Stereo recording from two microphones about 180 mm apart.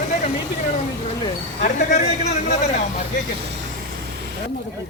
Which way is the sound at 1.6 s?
40° left (ahead or behind).